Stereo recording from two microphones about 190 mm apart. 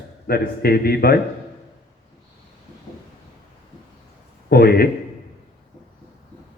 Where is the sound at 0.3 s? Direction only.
55° left (ahead or behind).